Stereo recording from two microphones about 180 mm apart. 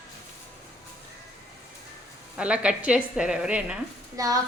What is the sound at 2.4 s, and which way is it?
A woman's voice, 5° right (ahead or behind).